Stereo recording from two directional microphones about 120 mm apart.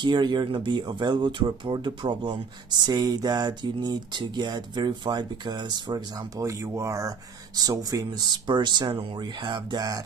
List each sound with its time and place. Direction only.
0.0 s speech: 40° right (ahead or behind)